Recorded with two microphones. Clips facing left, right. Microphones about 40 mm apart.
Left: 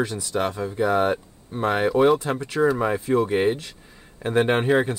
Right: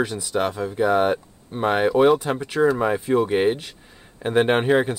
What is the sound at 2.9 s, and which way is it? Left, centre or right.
Speech, centre.